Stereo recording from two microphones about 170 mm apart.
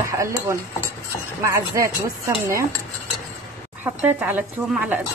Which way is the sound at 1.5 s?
15° right (ahead or behind).